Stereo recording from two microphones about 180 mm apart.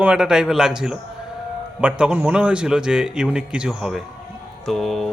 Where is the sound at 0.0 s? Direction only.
5° right (ahead or behind).